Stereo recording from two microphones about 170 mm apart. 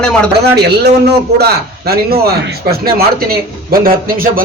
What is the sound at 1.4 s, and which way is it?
Speech, 65° right (ahead or behind).